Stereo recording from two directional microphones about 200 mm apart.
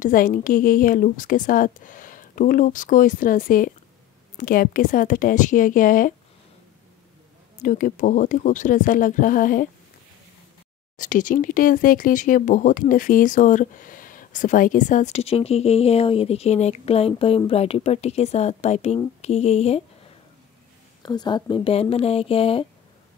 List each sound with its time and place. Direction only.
0.0 s a woman's voice: 40° left (ahead or behind)
7.6 s speech: 40° left (ahead or behind)
11.0 s speech: 40° left (ahead or behind)
21.0 s speech: 20° left (ahead or behind)